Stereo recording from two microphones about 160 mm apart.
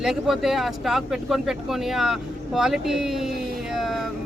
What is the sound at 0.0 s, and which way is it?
Speech, centre (ahead or behind).